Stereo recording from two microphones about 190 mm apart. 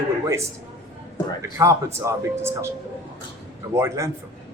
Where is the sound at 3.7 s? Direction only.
15° right (ahead or behind).